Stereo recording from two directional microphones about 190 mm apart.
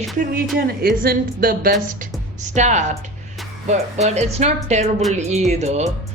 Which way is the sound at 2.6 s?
40° right (ahead or behind).